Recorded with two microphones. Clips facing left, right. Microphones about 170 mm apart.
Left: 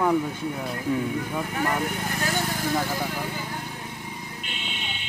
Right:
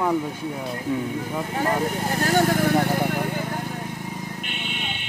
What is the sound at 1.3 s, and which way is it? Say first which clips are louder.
Speech: right 5 dB; 30° right (ahead or behind).